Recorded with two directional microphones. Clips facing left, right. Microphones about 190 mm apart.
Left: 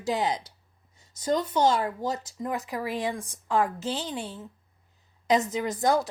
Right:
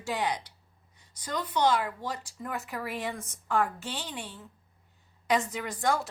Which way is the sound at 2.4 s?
35° left (ahead or behind).